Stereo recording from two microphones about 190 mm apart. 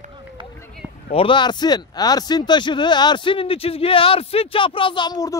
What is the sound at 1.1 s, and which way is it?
A man's voice, 25° left (ahead or behind).